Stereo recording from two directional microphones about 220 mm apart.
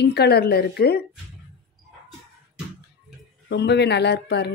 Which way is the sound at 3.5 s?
50° left (ahead or behind).